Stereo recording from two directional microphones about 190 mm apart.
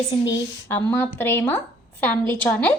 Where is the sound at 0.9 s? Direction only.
10° left (ahead or behind).